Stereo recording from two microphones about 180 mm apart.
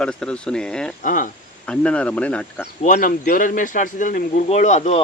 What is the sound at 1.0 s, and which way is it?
Speech, 45° left (ahead or behind).